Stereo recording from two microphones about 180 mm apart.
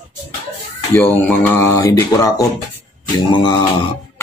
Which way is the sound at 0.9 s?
10° left (ahead or behind).